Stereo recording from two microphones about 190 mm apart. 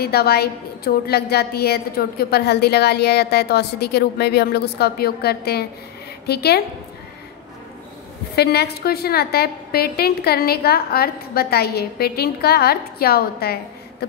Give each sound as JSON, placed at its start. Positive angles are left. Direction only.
{"t": 0.0, "sound": "a woman's voice", "side_deg": 55}
{"t": 8.4, "sound": "a woman's voice", "side_deg": 60}